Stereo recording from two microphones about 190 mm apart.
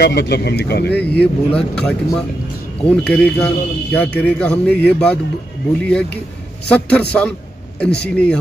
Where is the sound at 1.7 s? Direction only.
5° left (ahead or behind).